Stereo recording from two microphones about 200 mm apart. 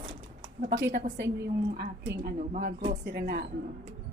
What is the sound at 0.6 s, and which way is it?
A woman's voice, 50° right (ahead or behind).